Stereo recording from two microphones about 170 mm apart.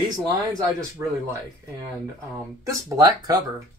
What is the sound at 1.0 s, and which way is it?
Speech, 20° right (ahead or behind).